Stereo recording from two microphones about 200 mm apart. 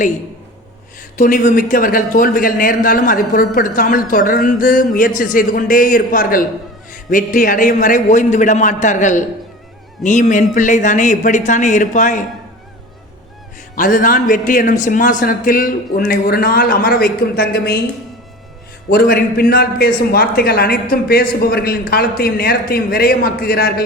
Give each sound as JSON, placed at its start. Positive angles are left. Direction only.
{"t": 1.2, "sound": "a man's voice", "side_deg": 40}
{"t": 13.7, "sound": "a man's voice", "side_deg": 40}
{"t": 18.9, "sound": "a man's voice", "side_deg": 50}